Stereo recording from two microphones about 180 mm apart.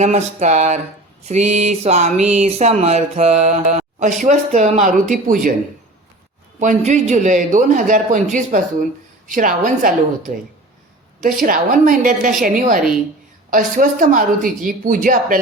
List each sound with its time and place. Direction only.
0.0 s a sound: 40° right (ahead or behind)
6.6 s speech: 40° right (ahead or behind)
11.2 s speech: 50° right (ahead or behind)